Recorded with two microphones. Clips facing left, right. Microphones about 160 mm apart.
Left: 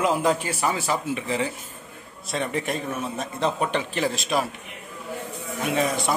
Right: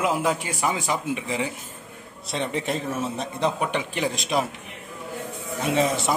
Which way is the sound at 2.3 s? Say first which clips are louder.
Even; 25° right (ahead or behind).